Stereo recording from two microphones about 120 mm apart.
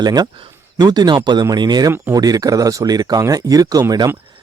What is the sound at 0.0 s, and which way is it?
Speech, 35° right (ahead or behind).